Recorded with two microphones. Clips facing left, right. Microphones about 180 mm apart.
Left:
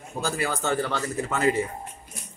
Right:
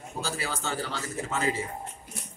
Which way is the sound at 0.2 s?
55° left (ahead or behind).